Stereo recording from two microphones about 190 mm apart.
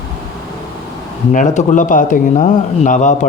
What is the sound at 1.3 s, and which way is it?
A man's voice, 40° left (ahead or behind).